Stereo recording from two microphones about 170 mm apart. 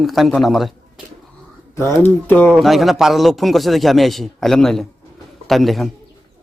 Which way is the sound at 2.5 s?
Centre (ahead or behind).